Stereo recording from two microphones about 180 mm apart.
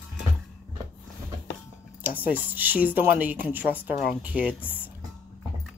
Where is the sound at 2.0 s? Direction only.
10° right (ahead or behind).